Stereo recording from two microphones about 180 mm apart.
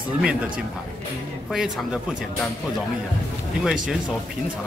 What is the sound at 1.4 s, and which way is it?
Speech, centre (ahead or behind).